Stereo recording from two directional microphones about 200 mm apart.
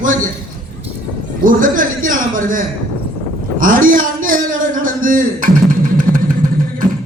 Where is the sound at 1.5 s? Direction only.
40° right (ahead or behind).